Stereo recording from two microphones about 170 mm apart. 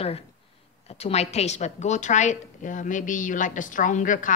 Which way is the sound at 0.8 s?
40° left (ahead or behind).